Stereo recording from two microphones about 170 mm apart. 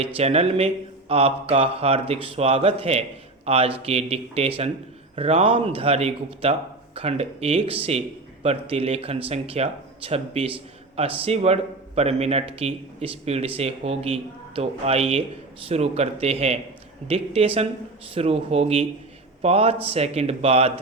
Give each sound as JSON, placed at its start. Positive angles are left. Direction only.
{"t": 0.0, "sound": "speech", "side_deg": -40}